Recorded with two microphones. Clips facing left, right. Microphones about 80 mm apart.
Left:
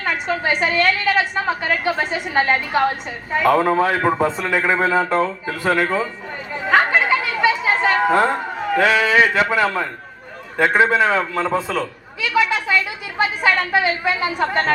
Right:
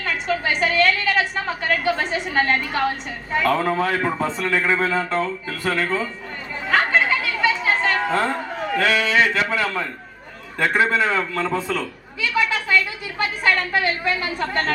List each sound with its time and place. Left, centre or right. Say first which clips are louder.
0.0 s a sound: left 2 dB; centre
0.5 s a woman's voice: even; centre
6.7 s chatter: left 3 dB; centre
9.5 s a woman's voice: left 4 dB; centre
11.1 s a man's voice: left 3 dB; centre
12.5 s a sound: left 1 dB; centre
13.7 s a woman's voice: left 3 dB; centre